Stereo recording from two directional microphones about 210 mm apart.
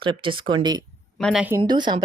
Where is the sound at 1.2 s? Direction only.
5° right (ahead or behind); by 2.0 s 20° right (ahead or behind).